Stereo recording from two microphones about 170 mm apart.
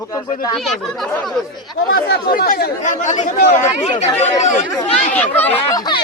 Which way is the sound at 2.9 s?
45° left (ahead or behind).